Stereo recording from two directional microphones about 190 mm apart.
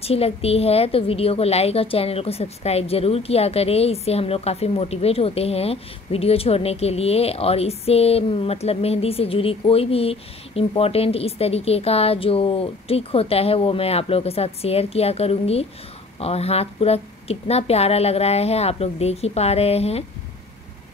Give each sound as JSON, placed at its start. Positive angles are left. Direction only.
{"t": 0.0, "sound": "a woman's voice", "side_deg": 30}